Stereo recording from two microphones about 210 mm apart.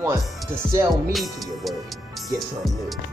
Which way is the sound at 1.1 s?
Centre (ahead or behind).